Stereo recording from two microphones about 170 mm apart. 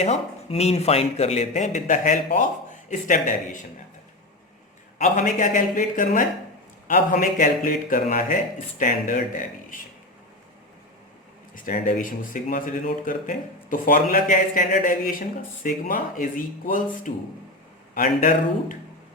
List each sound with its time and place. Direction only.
0.0 s a man's voice: 40° left (ahead or behind)
4.9 s a man's voice: 45° left (ahead or behind)
11.5 s a man's voice: 55° left (ahead or behind)